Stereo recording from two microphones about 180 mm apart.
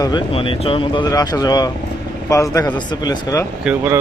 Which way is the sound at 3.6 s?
10° right (ahead or behind).